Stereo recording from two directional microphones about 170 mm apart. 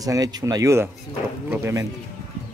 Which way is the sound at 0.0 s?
20° right (ahead or behind).